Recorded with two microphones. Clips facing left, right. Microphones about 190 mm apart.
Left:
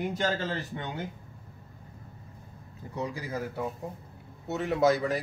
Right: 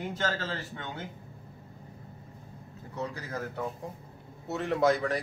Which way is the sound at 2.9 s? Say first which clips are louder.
Left 2 dB; 10° left (ahead or behind).